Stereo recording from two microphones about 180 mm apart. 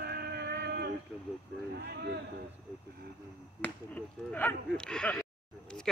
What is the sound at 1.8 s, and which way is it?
Speech, 65° right (ahead or behind).